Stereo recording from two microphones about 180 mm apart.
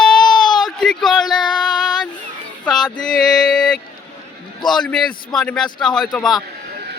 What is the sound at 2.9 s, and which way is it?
Mantra, 5° left (ahead or behind).